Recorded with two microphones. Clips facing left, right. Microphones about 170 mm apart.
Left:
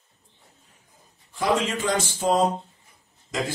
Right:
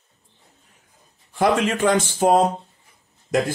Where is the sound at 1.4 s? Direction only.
60° right (ahead or behind).